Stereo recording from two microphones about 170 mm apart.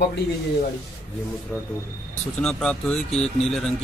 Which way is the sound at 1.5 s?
10° left (ahead or behind).